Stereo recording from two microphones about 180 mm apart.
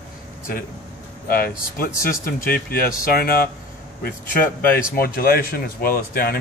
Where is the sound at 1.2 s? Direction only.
55° left (ahead or behind).